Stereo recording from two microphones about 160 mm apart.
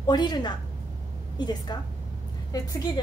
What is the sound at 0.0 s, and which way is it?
A woman's voice, 25° left (ahead or behind).